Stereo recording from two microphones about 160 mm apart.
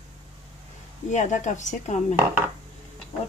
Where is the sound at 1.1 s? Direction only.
50° left (ahead or behind).